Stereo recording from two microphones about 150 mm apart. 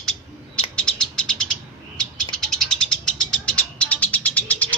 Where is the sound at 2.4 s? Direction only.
5° left (ahead or behind).